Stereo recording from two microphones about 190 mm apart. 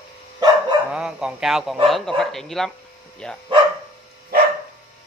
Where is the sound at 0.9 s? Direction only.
5° right (ahead or behind).